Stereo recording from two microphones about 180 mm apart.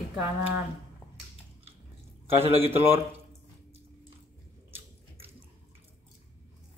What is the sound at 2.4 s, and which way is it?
Speech, 35° right (ahead or behind).